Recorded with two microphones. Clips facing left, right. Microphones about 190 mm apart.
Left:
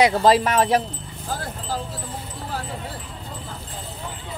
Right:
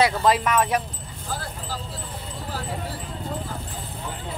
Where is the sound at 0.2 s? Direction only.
30° left (ahead or behind).